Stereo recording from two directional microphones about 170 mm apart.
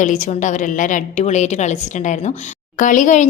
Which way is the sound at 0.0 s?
45° left (ahead or behind).